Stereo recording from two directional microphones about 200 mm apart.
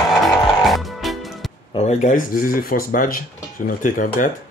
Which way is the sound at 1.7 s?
35° left (ahead or behind).